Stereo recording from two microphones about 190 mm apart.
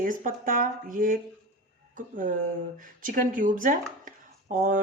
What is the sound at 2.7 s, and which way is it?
Speech, 45° right (ahead or behind).